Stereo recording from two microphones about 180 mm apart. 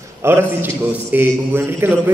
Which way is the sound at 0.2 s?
15° right (ahead or behind).